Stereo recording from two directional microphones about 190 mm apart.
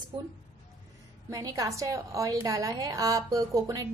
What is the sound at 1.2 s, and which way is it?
A woman's voice, 15° right (ahead or behind).